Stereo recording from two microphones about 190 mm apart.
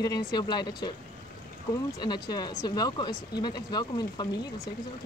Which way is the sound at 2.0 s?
20° left (ahead or behind).